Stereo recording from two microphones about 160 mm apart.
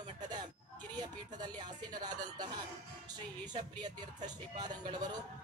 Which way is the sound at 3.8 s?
25° right (ahead or behind).